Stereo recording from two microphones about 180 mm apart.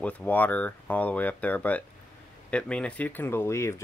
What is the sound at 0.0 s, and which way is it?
Speech, 10° left (ahead or behind).